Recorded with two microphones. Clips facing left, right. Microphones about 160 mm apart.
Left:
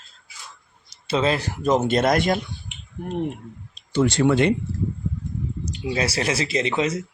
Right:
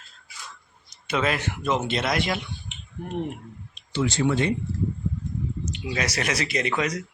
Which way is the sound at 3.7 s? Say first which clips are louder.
Left 6 dB; 45° left (ahead or behind).